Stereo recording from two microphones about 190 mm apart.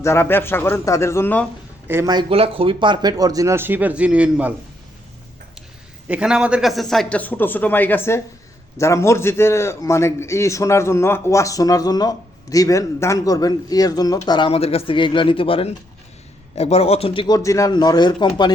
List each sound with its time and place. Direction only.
0.0 s a man's voice: 15° left (ahead or behind)
1.9 s speech: 15° right (ahead or behind)
6.1 s a man's voice: 5° right (ahead or behind); by 18.3 s 25° left (ahead or behind)